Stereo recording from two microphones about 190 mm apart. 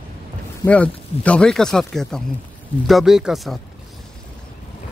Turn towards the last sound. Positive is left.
turn(degrees=0)  # may be behind; listen again after turning